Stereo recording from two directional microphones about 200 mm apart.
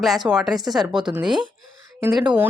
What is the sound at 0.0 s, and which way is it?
Speech, centre (ahead or behind).